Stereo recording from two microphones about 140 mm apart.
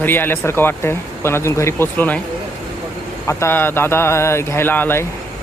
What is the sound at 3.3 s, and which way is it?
Speech, 20° left (ahead or behind).